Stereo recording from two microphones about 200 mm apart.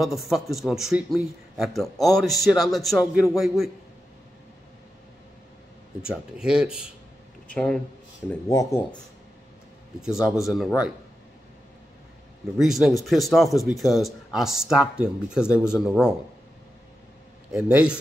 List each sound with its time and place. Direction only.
0.0 s a man's voice: centre (ahead or behind)
6.0 s a man's voice: 5° right (ahead or behind)
8.5 s speech: 20° left (ahead or behind)
10.0 s a man's voice: 5° right (ahead or behind)
12.5 s a man's voice: centre (ahead or behind)
17.5 s a man's voice: 5° right (ahead or behind)